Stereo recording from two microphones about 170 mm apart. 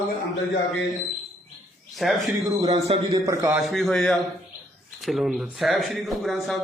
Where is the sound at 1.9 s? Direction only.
Centre (ahead or behind).